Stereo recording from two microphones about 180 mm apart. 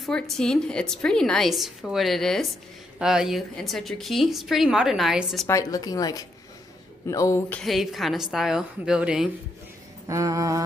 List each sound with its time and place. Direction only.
0.0 s a woman's voice: 5° left (ahead or behind)
5.5 s a woman's voice: 20° left (ahead or behind); by 9.3 s 5° right (ahead or behind)
10.0 s a sound: 20° right (ahead or behind)